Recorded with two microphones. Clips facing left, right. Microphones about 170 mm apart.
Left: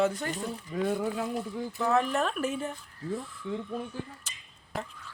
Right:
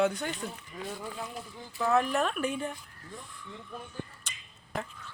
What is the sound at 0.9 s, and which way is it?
Speech, 55° left (ahead or behind).